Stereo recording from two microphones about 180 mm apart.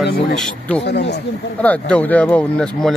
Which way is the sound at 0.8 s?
70° left (ahead or behind).